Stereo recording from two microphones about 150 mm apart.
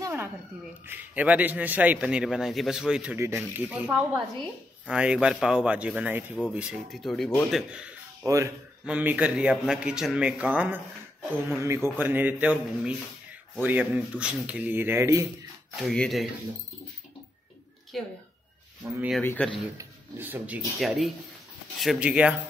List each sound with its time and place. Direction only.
0.0 s a sound: 15° right (ahead or behind)
0.8 s a man's voice: 10° right (ahead or behind); by 7.6 s 5° left (ahead or behind)
7.7 s a sound: 5° right (ahead or behind)
8.3 s speech: 20° right (ahead or behind)
8.8 s a man's voice: 10° right (ahead or behind)
15.9 s speech: 5° left (ahead or behind)
17.9 s speech: centre (ahead or behind)
19.2 s speech: 10° left (ahead or behind)
19.8 s speech: 15° right (ahead or behind)
20.8 s a man's voice: centre (ahead or behind)